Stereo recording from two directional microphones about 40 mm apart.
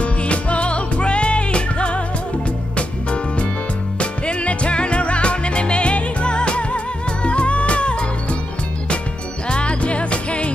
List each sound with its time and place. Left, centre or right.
0.0 s music: left
4.0 s music: left
9.5 s music: left